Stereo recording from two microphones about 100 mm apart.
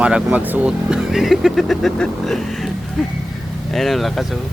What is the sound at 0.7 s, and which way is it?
Speech, 5° right (ahead or behind).